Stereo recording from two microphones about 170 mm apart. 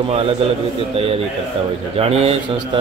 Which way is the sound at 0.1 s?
35° right (ahead or behind).